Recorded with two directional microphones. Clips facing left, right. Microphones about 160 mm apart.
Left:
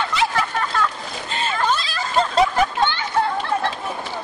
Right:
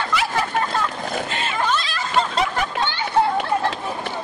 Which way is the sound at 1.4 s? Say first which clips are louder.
Left 4 dB; 35° left (ahead or behind).